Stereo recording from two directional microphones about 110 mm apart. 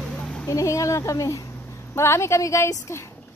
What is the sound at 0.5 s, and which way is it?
Speech, 30° left (ahead or behind).